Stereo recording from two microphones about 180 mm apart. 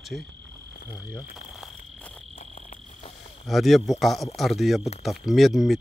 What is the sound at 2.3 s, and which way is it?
Cricket, 40° left (ahead or behind).